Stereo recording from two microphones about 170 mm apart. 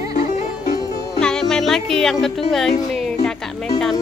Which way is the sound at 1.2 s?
5° left (ahead or behind).